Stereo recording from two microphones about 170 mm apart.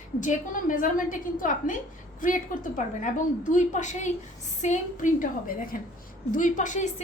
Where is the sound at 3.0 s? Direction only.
50° left (ahead or behind).